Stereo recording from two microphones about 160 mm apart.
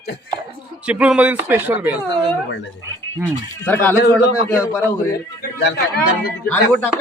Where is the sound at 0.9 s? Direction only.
5° right (ahead or behind).